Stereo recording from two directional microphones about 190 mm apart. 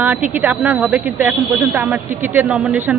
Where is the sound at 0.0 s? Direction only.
10° right (ahead or behind).